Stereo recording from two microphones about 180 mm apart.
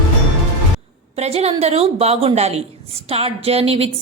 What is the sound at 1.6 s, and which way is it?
A woman's voice, 35° right (ahead or behind).